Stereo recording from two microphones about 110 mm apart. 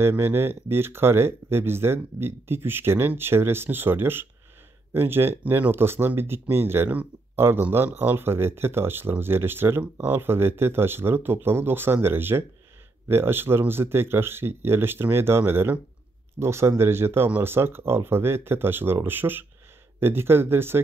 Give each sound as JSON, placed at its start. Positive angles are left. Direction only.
{"t": 0.0, "sound": "speech", "side_deg": -20}